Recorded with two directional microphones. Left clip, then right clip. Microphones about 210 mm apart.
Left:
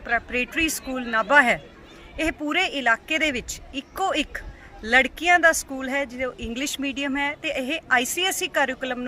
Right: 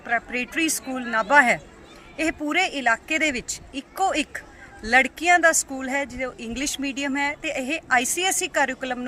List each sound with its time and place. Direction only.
0.0 s speech: 10° left (ahead or behind)